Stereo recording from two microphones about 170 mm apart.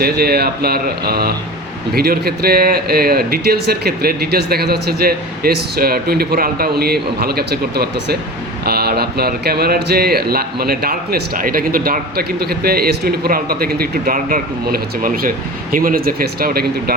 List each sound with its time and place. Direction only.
0.0 s speech: 65° right (ahead or behind)